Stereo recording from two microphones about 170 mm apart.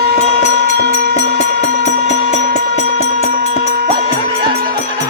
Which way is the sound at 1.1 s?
40° left (ahead or behind).